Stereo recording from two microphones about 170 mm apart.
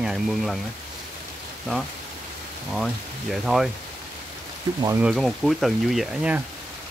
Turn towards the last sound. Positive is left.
turn(degrees=-5)  # may be behind; listen again after turning